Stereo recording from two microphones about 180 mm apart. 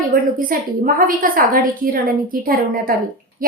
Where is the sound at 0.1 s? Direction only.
50° right (ahead or behind).